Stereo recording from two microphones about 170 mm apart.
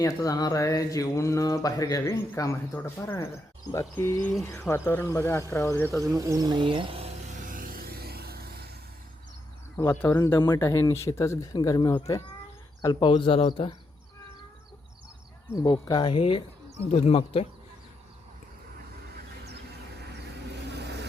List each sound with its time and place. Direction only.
0.0 s speech: 20° left (ahead or behind)
6.0 s speech: 20° right (ahead or behind)
7.3 s vehicle: 55° right (ahead or behind)
9.7 s speech: 15° left (ahead or behind); by 13.7 s 30° left (ahead or behind)
15.5 s speech: 25° left (ahead or behind)
20.7 s vehicle: 80° right